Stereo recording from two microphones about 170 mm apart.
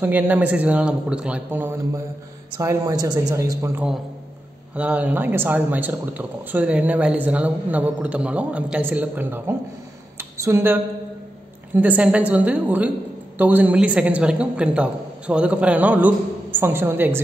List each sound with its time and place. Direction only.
0.0 s a man's voice: 10° right (ahead or behind)
10.1 s a sound: 15° right (ahead or behind)
11.7 s speech: 10° right (ahead or behind)